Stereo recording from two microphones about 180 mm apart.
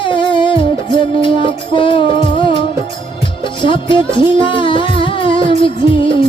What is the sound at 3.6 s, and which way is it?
Music, 25° left (ahead or behind).